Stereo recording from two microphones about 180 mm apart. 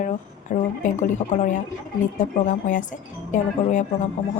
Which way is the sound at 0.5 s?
45° left (ahead or behind).